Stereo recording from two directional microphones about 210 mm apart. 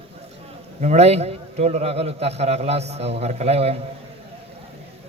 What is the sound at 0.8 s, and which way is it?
A man's voice, 30° right (ahead or behind).